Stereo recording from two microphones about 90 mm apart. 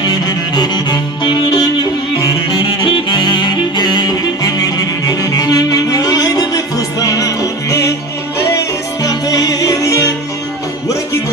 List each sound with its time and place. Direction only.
0.0 s music: 55° left (ahead or behind)
2.8 s music: 65° left (ahead or behind); by 9.1 s 30° left (ahead or behind)
9.3 s music: 45° left (ahead or behind)